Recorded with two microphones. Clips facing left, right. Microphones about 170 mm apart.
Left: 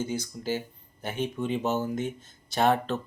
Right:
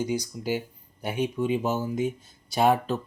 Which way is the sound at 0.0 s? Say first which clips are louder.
Right 3 dB; 15° right (ahead or behind).